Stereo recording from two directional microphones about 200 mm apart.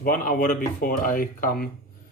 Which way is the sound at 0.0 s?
45° left (ahead or behind).